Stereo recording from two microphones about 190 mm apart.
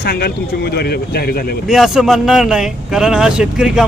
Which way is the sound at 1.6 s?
Centre (ahead or behind).